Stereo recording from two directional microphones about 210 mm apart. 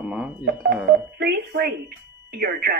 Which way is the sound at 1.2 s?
50° right (ahead or behind).